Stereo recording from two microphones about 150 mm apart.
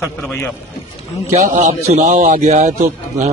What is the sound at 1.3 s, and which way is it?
A man's voice, 50° right (ahead or behind).